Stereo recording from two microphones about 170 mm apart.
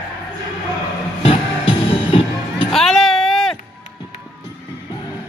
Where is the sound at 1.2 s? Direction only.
35° left (ahead or behind).